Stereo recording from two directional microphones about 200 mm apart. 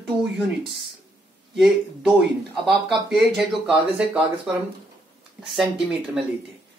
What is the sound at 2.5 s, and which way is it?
Speech, centre (ahead or behind).